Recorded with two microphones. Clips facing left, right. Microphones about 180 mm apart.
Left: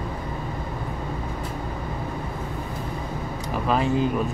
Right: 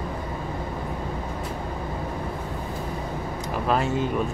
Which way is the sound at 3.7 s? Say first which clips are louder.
Left 2 dB; centre (ahead or behind).